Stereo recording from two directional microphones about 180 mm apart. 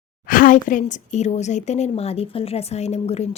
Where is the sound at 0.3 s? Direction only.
50° left (ahead or behind).